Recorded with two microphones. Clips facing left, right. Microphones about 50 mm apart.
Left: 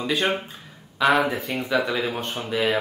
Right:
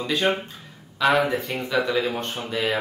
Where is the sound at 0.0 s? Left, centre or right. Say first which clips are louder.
Right 1 dB; centre.